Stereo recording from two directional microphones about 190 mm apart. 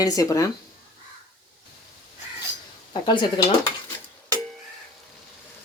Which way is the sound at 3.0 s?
25° left (ahead or behind).